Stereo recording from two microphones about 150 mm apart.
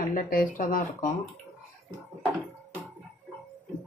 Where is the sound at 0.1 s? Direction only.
70° left (ahead or behind).